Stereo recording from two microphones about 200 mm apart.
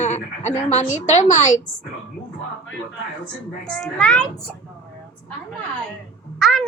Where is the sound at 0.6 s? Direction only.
35° left (ahead or behind).